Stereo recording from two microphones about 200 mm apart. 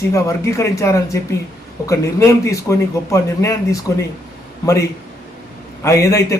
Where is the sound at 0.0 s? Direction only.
15° left (ahead or behind).